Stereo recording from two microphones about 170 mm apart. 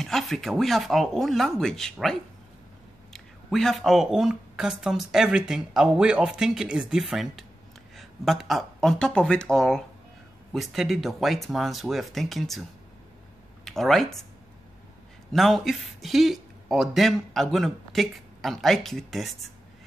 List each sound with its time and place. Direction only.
0.0 s speech: centre (ahead or behind)
13.7 s speech: centre (ahead or behind)
15.3 s speech: centre (ahead or behind)